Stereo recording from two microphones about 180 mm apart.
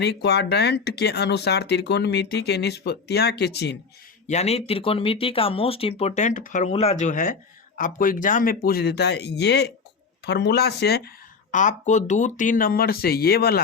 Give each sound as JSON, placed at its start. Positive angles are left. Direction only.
{"t": 0.0, "sound": "speech", "side_deg": 70}
{"t": 4.3, "sound": "speech", "side_deg": 35}
{"t": 11.5, "sound": "speech", "side_deg": 45}